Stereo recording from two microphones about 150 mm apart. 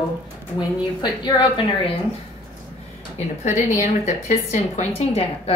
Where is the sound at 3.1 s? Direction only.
55° left (ahead or behind).